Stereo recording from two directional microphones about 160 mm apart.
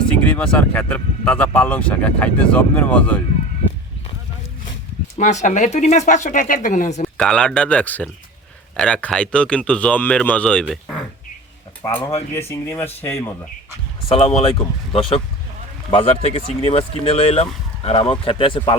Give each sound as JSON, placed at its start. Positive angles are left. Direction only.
{"t": 0.1, "sound": "speech", "side_deg": 10}
{"t": 5.1, "sound": "speech", "side_deg": 50}
{"t": 7.2, "sound": "speech", "side_deg": 5}
{"t": 11.9, "sound": "speech", "side_deg": 35}
{"t": 12.3, "sound": "speech", "side_deg": 15}
{"t": 14.1, "sound": "speech", "side_deg": 40}
{"t": 15.9, "sound": "speech", "side_deg": 35}